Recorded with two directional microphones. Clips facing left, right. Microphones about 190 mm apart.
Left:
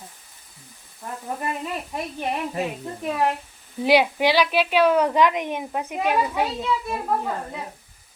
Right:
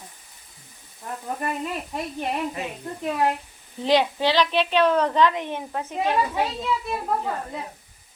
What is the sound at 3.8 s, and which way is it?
A woman's voice, 10° left (ahead or behind).